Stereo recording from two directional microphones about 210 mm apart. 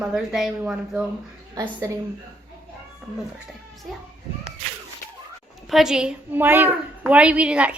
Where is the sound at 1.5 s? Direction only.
15° right (ahead or behind).